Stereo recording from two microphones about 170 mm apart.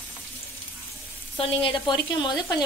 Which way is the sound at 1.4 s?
30° left (ahead or behind).